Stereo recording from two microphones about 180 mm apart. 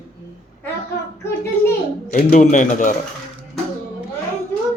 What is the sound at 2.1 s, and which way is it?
Speech, 45° left (ahead or behind).